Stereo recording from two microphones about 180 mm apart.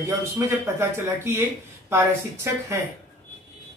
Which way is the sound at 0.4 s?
15° right (ahead or behind).